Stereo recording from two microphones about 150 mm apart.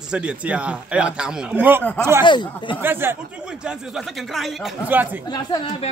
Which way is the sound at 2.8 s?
15° right (ahead or behind).